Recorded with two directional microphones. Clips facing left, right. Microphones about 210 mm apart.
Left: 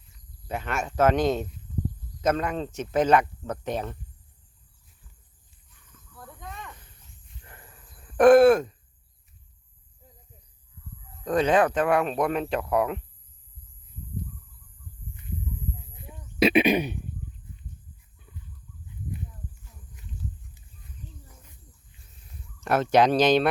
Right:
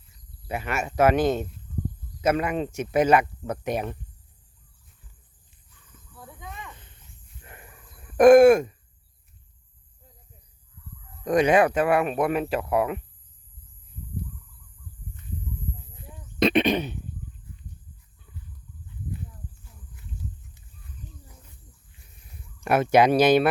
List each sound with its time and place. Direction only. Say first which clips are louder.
0.4 s speech: right 1 dB; 10° right (ahead or behind)
6.1 s cricket: even; 5° right (ahead or behind)
7.4 s dog: right 4 dB; 15° right (ahead or behind)
8.1 s speech: right 2 dB; 10° right (ahead or behind)
11.3 s speech: right 2 dB; 10° right (ahead or behind)
16.0 s a sound: even; 5° left (ahead or behind)
22.6 s speech: right 2 dB; 10° right (ahead or behind)